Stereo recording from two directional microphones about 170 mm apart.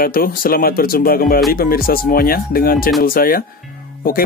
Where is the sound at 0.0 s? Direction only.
55° left (ahead or behind).